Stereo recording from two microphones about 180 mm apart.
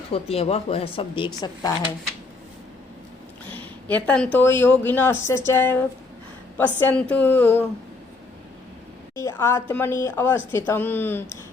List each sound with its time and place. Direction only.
0.1 s speech: 35° left (ahead or behind)
3.5 s speech: 10° left (ahead or behind)
9.1 s speech: 15° left (ahead or behind)